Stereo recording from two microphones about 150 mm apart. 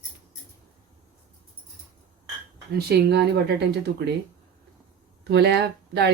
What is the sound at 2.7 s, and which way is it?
Speech, 90° right.